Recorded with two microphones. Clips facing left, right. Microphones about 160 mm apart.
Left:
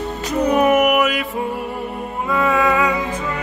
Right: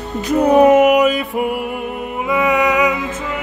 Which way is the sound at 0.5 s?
25° right (ahead or behind).